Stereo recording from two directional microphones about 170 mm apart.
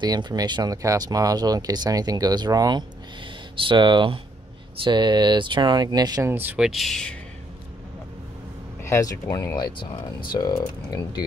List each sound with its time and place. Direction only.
0.0 s speech: 25° right (ahead or behind); by 7.2 s 5° left (ahead or behind)
8.8 s speech: 20° left (ahead or behind)